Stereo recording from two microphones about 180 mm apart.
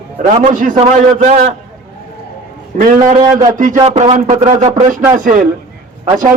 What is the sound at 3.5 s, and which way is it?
Music, 45° right (ahead or behind).